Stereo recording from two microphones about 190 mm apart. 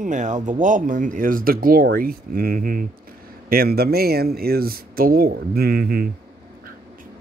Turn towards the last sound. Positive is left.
turn(degrees=-55)  # may be behind; listen again after turning